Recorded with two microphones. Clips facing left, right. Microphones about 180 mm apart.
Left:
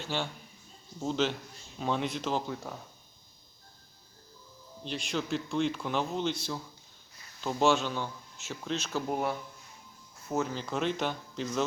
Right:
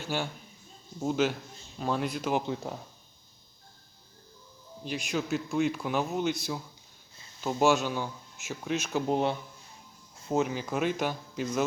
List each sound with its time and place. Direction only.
0.0 s speech: 10° right (ahead or behind)
2.3 s speech: 20° right (ahead or behind)
4.8 s speech: 5° right (ahead or behind)
7.6 s speech: 10° right (ahead or behind)